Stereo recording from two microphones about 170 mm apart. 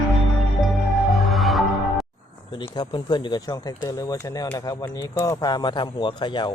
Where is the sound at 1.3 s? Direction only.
Centre (ahead or behind).